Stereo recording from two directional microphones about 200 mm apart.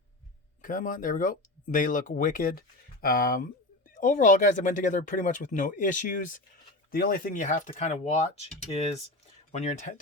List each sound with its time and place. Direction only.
0.6 s speech: 40° left (ahead or behind)